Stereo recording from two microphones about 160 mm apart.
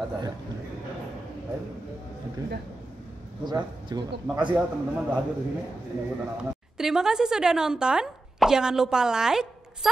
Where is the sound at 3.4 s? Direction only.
25° right (ahead or behind).